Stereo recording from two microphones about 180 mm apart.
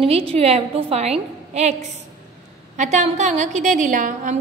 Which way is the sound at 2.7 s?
40° right (ahead or behind).